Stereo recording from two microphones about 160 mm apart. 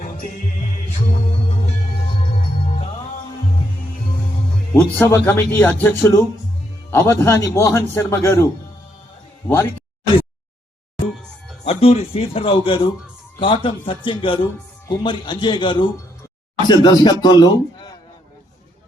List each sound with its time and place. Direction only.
4.7 s a man's voice: 15° left (ahead or behind)
11.6 s a man's voice: 40° left (ahead or behind)